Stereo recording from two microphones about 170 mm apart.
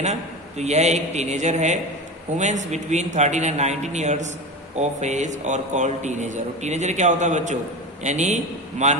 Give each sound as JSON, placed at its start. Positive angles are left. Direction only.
{"t": 0.0, "sound": "a man's voice", "side_deg": -40}